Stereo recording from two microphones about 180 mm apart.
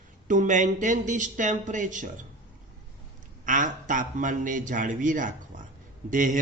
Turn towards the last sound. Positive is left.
turn(degrees=-45)  # may be behind; listen again after turning